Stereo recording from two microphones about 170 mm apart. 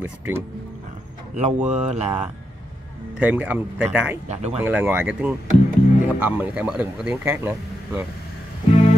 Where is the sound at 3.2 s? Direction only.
10° right (ahead or behind).